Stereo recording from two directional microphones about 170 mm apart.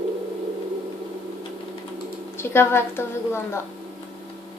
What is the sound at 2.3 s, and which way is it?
A woman's voice, 15° left (ahead or behind).